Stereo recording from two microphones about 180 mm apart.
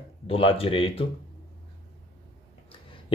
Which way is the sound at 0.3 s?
30° left (ahead or behind).